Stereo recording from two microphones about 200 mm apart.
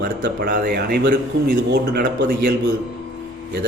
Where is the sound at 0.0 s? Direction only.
50° right (ahead or behind).